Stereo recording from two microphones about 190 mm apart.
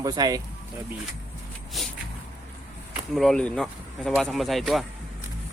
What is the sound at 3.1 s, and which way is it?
Speech, centre (ahead or behind).